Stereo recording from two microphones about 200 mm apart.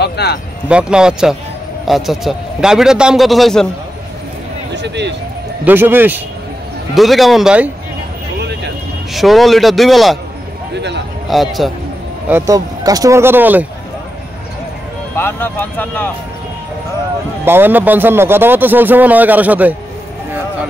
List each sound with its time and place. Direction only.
0.0 s speech: 55° left (ahead or behind)
0.7 s a man's voice: 5° right (ahead or behind)
4.7 s speech: 60° right (ahead or behind)
5.7 s a man's voice: 10° right (ahead or behind)
8.4 s vehicle: 55° right (ahead or behind)
9.1 s a man's voice: centre (ahead or behind)
10.7 s a sound: 60° right (ahead or behind)
11.2 s a man's voice: centre (ahead or behind)
12.3 s a man's voice: 15° right (ahead or behind)
15.1 s speech: 10° left (ahead or behind)
17.5 s a man's voice: 10° right (ahead or behind)